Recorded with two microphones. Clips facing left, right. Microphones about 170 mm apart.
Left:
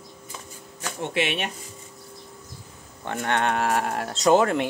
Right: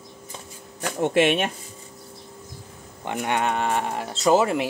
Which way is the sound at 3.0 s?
15° right (ahead or behind).